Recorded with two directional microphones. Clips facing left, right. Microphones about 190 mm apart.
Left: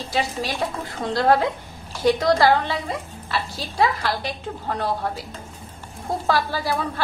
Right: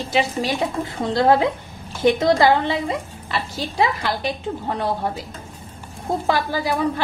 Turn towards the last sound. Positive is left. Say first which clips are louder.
# right 4 dB
turn(degrees=-20)  # may be behind; listen again after turning